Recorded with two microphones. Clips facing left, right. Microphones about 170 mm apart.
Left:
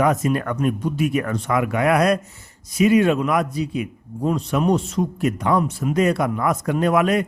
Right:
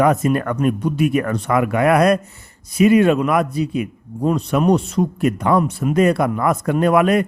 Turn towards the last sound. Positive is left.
turn(degrees=-55)  # may be behind; listen again after turning